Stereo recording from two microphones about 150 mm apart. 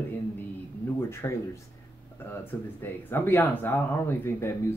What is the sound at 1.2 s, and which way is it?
Speech, 20° left (ahead or behind).